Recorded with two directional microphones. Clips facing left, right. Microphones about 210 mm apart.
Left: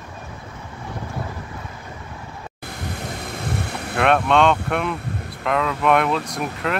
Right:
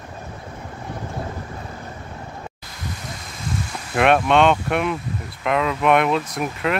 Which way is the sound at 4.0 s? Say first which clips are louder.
Right 1 dB; 5° right (ahead or behind).